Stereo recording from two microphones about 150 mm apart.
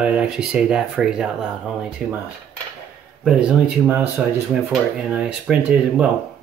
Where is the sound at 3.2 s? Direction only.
5° right (ahead or behind).